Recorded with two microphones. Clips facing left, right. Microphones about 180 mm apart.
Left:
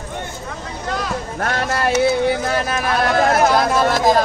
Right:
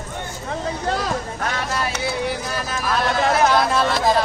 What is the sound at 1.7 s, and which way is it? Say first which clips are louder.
Speech: left 8 dB; 60° left (ahead or behind).